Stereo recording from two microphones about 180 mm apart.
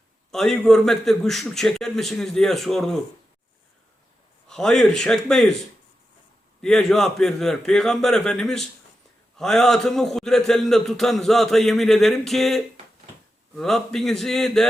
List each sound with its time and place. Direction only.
0.3 s a man's voice: centre (ahead or behind)
4.4 s a man's voice: 5° left (ahead or behind)
6.6 s a man's voice: centre (ahead or behind)